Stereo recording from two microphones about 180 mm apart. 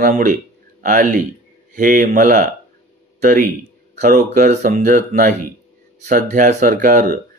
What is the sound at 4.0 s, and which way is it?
Speech, 45° right (ahead or behind).